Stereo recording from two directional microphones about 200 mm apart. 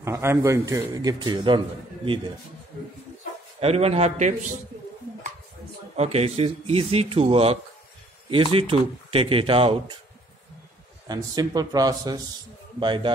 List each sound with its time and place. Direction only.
0.0 s a man's voice: 10° right (ahead or behind)
3.6 s a man's voice: 30° right (ahead or behind)
5.9 s speech: 30° right (ahead or behind)
11.1 s speech: 20° right (ahead or behind)